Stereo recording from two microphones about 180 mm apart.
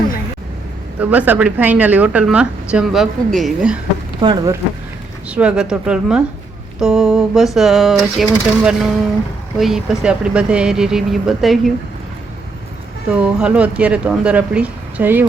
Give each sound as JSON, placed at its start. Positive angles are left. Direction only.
{"t": 0.9, "sound": "speech", "side_deg": -10}
{"t": 4.2, "sound": "speech", "side_deg": -25}
{"t": 5.3, "sound": "speech", "side_deg": -5}
{"t": 13.1, "sound": "speech", "side_deg": -5}